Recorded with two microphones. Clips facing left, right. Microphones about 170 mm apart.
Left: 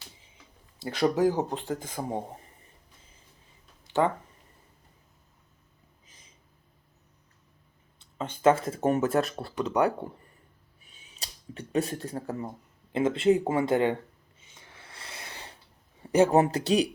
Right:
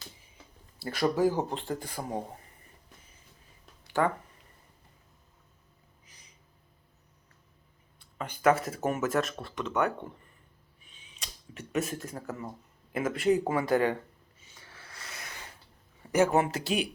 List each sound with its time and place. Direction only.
0.8 s speech: 20° left (ahead or behind)
3.9 s a sound: 25° left (ahead or behind)
6.1 s a sound: 25° left (ahead or behind)
7.9 s speech: 25° left (ahead or behind)
10.8 s camera: 40° left (ahead or behind)
12.9 s speech: 25° left (ahead or behind)
14.4 s snort: 20° left (ahead or behind)
16.1 s speech: 35° left (ahead or behind)